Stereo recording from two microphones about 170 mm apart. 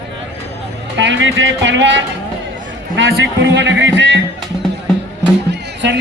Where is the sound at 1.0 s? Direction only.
90° right.